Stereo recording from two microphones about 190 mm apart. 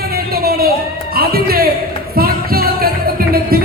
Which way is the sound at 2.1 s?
50° right (ahead or behind).